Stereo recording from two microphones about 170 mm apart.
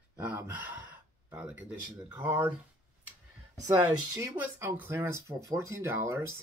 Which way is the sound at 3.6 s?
20° right (ahead or behind).